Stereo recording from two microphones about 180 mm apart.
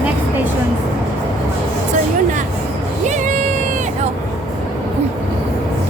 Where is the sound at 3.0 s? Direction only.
45° right (ahead or behind).